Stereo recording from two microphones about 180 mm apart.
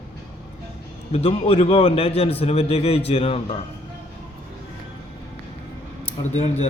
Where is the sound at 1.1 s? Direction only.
35° left (ahead or behind).